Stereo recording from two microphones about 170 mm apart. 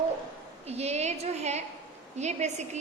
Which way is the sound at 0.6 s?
40° right (ahead or behind).